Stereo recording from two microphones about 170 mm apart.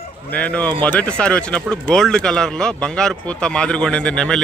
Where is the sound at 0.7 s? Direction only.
25° right (ahead or behind).